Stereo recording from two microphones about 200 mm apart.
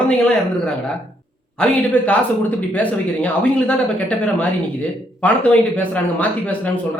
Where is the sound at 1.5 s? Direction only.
5° left (ahead or behind).